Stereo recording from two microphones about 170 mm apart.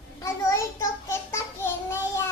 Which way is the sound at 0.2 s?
20° left (ahead or behind).